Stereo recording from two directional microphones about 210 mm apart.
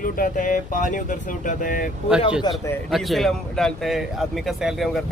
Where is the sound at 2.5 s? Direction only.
20° left (ahead or behind).